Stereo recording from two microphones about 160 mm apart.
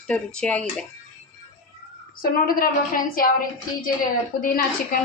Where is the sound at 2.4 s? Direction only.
65° left (ahead or behind).